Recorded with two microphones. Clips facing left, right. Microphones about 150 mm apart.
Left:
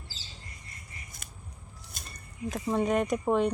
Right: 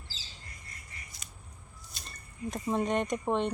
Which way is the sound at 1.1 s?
50° left (ahead or behind).